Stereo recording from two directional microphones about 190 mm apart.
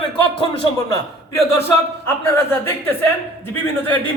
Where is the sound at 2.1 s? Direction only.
10° left (ahead or behind).